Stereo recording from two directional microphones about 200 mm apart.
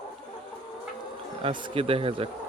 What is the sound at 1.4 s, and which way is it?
Speech, 25° right (ahead or behind).